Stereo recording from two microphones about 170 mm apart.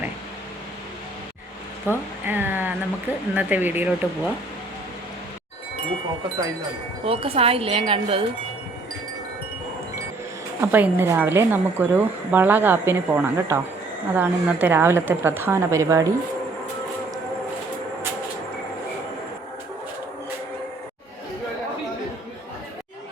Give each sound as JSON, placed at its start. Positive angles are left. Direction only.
{"t": 1.9, "sound": "speech", "side_deg": -10}
{"t": 7.0, "sound": "speech", "side_deg": -35}
{"t": 10.6, "sound": "speech", "side_deg": -10}